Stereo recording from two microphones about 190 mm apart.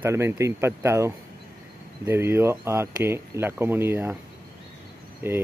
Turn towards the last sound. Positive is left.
turn(degrees=-10)  # may be behind; listen again after turning